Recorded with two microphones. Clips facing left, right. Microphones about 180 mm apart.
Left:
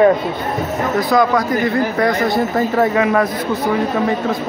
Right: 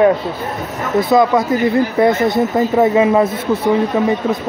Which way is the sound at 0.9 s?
25° right (ahead or behind).